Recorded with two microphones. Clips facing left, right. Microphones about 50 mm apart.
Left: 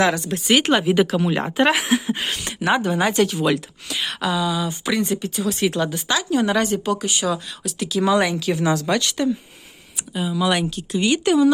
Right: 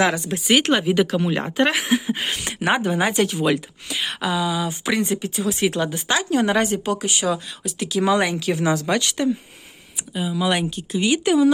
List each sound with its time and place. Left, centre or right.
0.0 s speech: centre
0.7 s speech: centre
2.6 s speech: right
4.4 s speech: right
6.1 s speech: right
10.2 s speech: centre